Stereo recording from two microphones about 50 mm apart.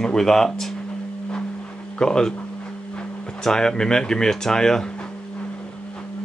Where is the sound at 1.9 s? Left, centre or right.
Centre.